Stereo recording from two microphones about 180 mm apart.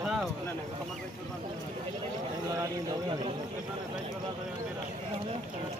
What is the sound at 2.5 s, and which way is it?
Speech, 20° right (ahead or behind).